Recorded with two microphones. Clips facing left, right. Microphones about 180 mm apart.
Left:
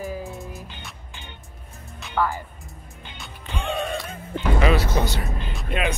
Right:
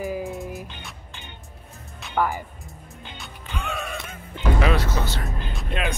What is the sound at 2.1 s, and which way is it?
Speech, 15° right (ahead or behind).